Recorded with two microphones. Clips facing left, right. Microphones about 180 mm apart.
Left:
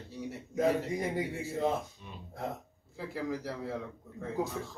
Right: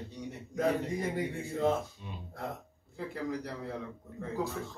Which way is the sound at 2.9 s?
Centre (ahead or behind).